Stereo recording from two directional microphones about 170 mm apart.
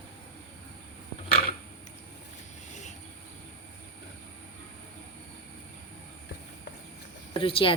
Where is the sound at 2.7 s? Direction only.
45° left (ahead or behind).